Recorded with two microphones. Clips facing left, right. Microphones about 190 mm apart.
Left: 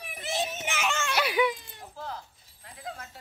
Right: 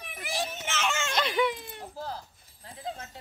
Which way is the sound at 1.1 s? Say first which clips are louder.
Left 1 dB; 5° left (ahead or behind).